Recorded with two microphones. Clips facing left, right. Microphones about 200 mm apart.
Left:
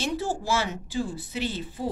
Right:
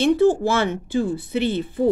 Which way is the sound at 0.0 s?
55° right (ahead or behind).